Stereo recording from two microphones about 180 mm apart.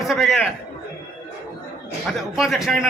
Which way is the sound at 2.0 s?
Centre (ahead or behind).